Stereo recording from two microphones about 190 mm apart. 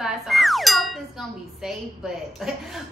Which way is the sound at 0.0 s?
Centre (ahead or behind).